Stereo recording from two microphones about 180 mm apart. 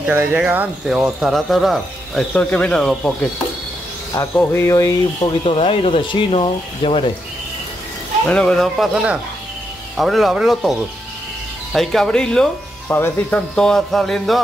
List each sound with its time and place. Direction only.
0.0 s speech: 10° right (ahead or behind); by 5.3 s 15° left (ahead or behind)
5.4 s speech: 30° left (ahead or behind)
8.3 s speech: 5° left (ahead or behind)